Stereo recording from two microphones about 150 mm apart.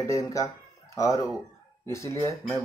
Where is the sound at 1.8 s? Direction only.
20° left (ahead or behind).